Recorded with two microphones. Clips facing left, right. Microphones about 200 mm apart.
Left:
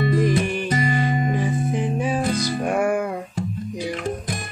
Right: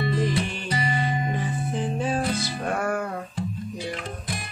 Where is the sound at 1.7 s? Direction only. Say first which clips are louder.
Left 3 dB; 15° left (ahead or behind).